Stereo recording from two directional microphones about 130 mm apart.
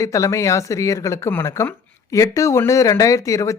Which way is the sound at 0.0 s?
25° left (ahead or behind).